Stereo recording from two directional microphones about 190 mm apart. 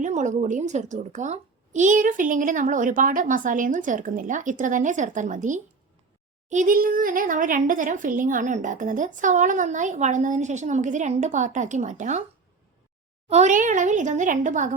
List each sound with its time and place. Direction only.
0.0 s speech: 40° right (ahead or behind)
13.3 s speech: 40° right (ahead or behind)